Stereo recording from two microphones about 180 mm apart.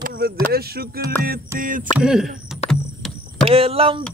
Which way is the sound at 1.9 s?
5° right (ahead or behind).